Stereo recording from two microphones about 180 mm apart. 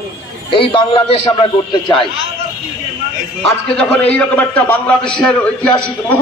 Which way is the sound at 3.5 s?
5° left (ahead or behind).